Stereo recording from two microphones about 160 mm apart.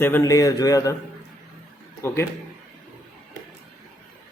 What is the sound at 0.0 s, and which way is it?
Speech, 15° left (ahead or behind).